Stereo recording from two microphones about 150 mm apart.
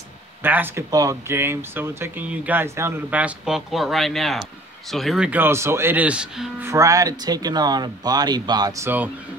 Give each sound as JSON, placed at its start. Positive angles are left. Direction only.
{"t": 0.4, "sound": "speech", "side_deg": -15}
{"t": 6.6, "sound": "speech", "side_deg": -20}